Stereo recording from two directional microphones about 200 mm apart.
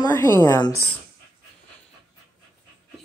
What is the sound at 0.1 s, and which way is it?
Speech, 15° left (ahead or behind).